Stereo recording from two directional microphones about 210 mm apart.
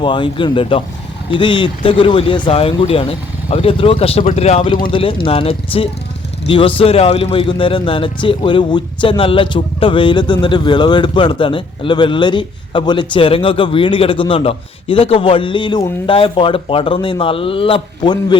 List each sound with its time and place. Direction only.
0.0 s speech: 25° left (ahead or behind)